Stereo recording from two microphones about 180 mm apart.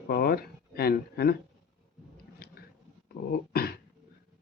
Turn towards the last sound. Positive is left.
turn(degrees=60)  # may be behind; listen again after turning